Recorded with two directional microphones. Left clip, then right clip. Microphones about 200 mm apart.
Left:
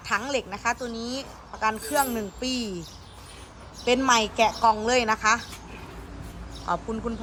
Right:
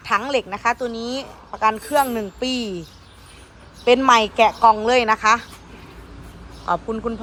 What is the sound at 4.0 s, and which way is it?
A woman's voice, 5° left (ahead or behind).